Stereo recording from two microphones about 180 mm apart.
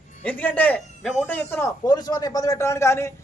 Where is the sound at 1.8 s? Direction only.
20° left (ahead or behind).